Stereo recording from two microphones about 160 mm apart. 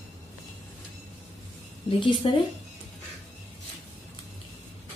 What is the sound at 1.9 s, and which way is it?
Speech, 30° left (ahead or behind).